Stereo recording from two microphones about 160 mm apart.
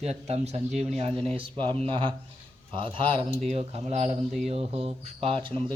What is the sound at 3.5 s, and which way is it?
Speech, 40° right (ahead or behind).